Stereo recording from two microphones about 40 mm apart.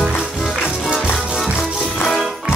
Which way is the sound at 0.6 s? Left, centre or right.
Centre.